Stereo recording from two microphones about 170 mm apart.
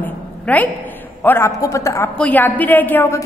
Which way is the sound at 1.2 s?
15° left (ahead or behind).